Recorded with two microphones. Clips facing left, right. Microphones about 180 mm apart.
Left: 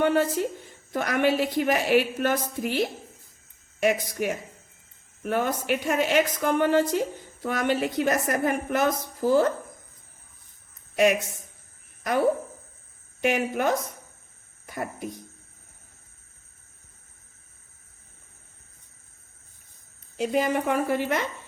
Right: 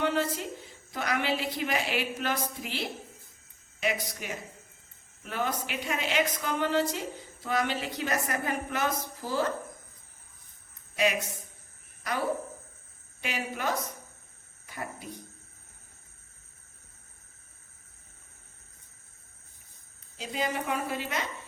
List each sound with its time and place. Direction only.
0.0 s a woman's voice: 50° left (ahead or behind)
3.8 s a woman's voice: 50° left (ahead or behind)
10.9 s speech: 50° left (ahead or behind)
13.2 s a woman's voice: 50° left (ahead or behind)
20.1 s a woman's voice: 55° left (ahead or behind)